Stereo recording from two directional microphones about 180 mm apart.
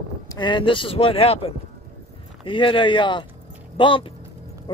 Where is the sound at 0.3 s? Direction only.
25° left (ahead or behind).